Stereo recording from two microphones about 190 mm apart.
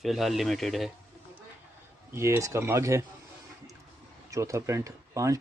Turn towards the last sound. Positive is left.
turn(degrees=-15)  # may be behind; listen again after turning